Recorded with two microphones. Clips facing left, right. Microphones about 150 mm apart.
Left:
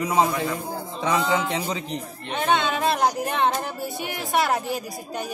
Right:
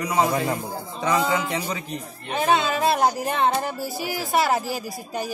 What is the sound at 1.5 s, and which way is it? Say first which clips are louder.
Speech: left 1 dB; 20° left (ahead or behind).